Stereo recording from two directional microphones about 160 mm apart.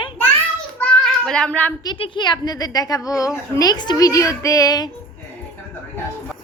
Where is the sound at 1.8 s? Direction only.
30° left (ahead or behind).